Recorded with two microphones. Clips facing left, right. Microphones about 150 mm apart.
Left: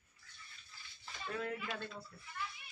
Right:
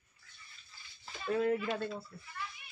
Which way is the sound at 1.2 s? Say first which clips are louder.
Right 10 dB; 30° right (ahead or behind).